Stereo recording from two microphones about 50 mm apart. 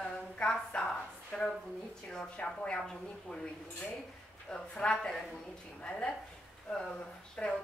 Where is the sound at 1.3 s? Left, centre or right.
Centre.